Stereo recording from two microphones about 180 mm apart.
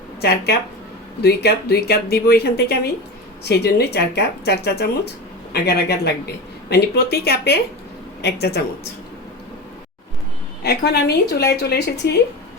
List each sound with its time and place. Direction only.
1.2 s speech: 65° left (ahead or behind)
10.6 s speech: 65° left (ahead or behind)